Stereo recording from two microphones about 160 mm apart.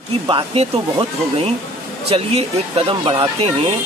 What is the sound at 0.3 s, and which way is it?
Speech, 35° right (ahead or behind).